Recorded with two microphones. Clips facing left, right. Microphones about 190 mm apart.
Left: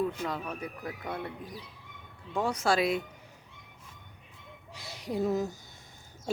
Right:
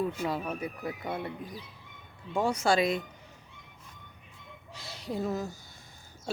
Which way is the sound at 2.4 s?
Centre (ahead or behind).